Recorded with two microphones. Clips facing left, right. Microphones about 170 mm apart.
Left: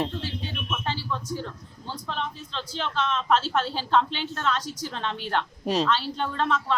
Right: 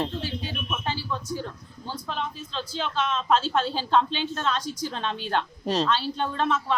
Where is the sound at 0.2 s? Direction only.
15° right (ahead or behind).